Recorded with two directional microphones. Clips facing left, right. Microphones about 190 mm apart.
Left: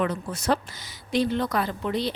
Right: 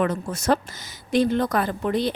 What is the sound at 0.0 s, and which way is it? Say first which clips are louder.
A woman's voice: right 3 dB; 45° right (ahead or behind).